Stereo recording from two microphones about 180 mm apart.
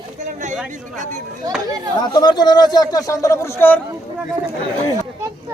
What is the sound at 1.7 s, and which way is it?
Speech, 20° right (ahead or behind).